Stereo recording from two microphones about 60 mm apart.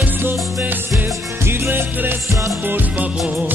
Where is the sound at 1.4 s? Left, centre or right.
Right.